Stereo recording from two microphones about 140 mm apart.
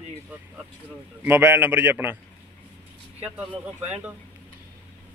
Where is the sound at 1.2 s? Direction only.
15° right (ahead or behind).